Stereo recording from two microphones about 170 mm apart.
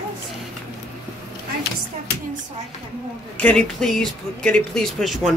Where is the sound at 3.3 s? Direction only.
5° left (ahead or behind).